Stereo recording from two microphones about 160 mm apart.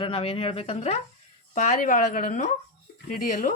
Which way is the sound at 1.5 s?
55° left (ahead or behind).